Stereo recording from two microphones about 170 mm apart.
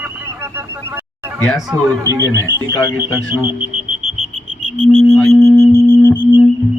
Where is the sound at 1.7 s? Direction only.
20° right (ahead or behind).